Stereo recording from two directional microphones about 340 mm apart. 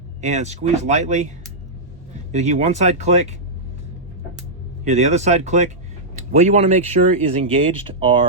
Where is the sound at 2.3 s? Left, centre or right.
Centre.